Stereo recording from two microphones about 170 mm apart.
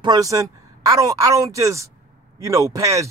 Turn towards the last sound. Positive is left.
turn(degrees=-15)  # may be behind; listen again after turning